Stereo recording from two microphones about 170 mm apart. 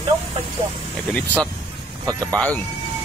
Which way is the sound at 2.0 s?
20° right (ahead or behind).